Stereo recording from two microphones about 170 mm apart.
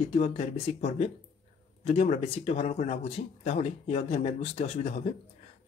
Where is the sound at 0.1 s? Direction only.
40° left (ahead or behind).